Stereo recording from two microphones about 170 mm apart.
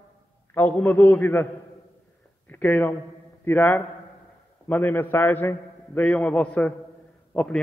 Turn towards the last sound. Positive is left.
turn(degrees=5)  # may be behind; listen again after turning